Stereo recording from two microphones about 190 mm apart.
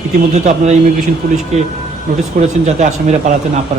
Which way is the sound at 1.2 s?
55° right (ahead or behind).